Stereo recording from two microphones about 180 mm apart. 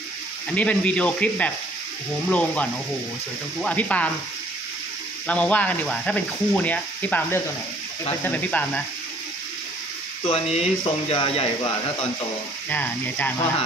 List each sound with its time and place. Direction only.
0.6 s speech: 5° left (ahead or behind)
5.2 s speech: 5° left (ahead or behind)
10.2 s speech: 30° left (ahead or behind)
12.6 s speech: 10° left (ahead or behind)